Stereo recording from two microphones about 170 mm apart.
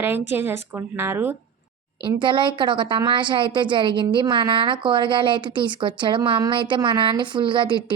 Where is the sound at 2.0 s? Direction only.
30° right (ahead or behind).